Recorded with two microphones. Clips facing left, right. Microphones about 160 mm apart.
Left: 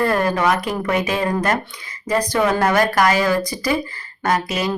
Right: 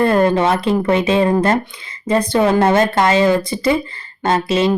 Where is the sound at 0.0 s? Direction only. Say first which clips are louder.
Right 4 dB; 25° right (ahead or behind).